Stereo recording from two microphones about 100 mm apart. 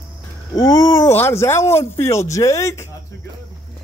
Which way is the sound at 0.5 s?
40° left (ahead or behind).